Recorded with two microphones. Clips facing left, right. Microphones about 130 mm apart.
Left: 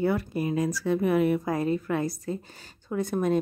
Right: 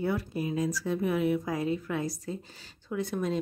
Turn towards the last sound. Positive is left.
turn(degrees=50)  # may be behind; listen again after turning